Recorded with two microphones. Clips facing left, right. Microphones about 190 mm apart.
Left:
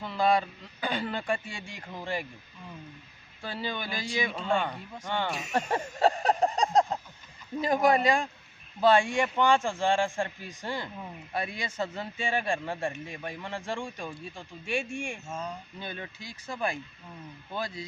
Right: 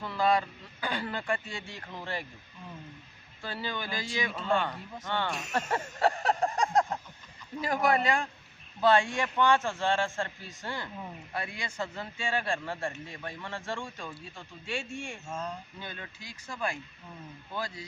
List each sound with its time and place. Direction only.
0.0 s speech: 15° left (ahead or behind)
3.4 s speech: 15° left (ahead or behind)
4.3 s speech: 5° right (ahead or behind)
5.0 s speech: 15° left (ahead or behind)
5.3 s speech: centre (ahead or behind)
5.7 s a sound: 20° left (ahead or behind)
7.6 s speech: 20° left (ahead or behind)
15.3 s speech: 5° left (ahead or behind)
15.8 s speech: 15° left (ahead or behind)